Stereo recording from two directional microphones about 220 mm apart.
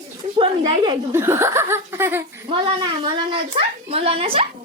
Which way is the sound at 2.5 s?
20° right (ahead or behind).